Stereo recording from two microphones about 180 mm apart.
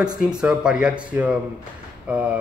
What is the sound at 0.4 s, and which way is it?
A man's voice, 5° right (ahead or behind).